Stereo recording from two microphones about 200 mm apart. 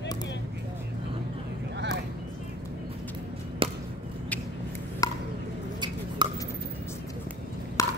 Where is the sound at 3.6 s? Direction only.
25° right (ahead or behind).